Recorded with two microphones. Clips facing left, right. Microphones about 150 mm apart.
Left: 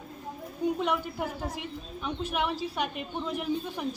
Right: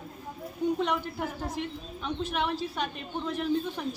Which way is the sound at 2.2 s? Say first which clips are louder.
Even; 10° left (ahead or behind).